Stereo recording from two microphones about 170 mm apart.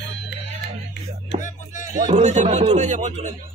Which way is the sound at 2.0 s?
45° right (ahead or behind).